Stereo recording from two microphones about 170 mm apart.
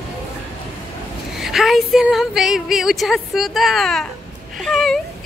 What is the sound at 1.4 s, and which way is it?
A woman's voice, centre (ahead or behind).